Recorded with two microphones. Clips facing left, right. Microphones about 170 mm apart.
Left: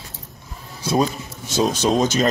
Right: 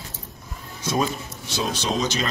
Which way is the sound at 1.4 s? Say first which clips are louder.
Left 7 dB; 45° left (ahead or behind).